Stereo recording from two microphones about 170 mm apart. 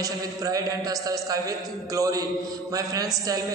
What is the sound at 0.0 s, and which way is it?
A man's voice, 20° right (ahead or behind).